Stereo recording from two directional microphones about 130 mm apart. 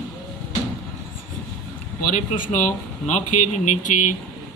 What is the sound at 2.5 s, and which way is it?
Speech, 70° left (ahead or behind).